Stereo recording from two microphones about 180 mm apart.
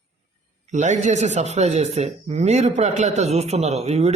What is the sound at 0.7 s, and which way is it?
Speech, 40° right (ahead or behind).